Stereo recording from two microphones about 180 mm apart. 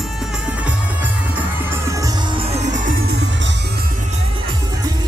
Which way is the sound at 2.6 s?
45° right (ahead or behind).